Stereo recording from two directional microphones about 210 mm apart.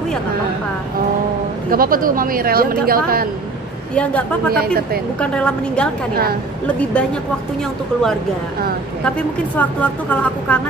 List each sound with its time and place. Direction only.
1.7 s speech: 45° right (ahead or behind)
3.9 s a woman's voice: 5° left (ahead or behind)
4.5 s speech: 45° right (ahead or behind)
5.2 s a woman's voice: 5° left (ahead or behind)
9.6 s a woman's voice: 5° left (ahead or behind)